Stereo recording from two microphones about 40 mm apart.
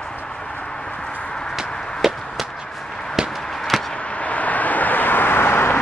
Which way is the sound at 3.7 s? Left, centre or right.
Centre.